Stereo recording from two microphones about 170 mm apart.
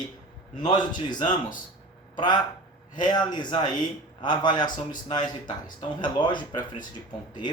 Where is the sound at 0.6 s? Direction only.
50° left (ahead or behind).